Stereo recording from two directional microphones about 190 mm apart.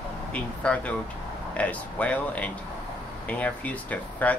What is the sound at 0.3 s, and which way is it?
Speech, 5° left (ahead or behind).